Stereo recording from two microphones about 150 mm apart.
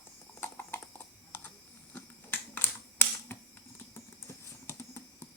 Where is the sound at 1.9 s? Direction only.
10° left (ahead or behind).